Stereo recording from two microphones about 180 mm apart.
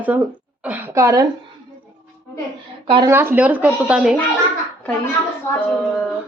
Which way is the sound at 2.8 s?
25° right (ahead or behind).